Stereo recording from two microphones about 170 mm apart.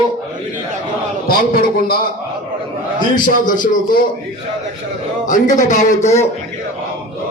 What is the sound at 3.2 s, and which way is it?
Speech, 50° left (ahead or behind).